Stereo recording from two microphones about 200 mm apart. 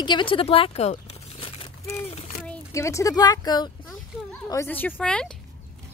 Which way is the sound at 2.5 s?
15° left (ahead or behind).